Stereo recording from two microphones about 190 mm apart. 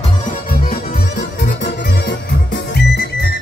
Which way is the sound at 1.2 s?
50° left (ahead or behind).